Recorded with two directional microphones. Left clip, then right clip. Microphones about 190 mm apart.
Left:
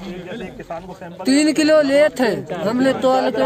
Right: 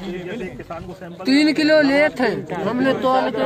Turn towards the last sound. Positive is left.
turn(degrees=55)  # may be behind; listen again after turning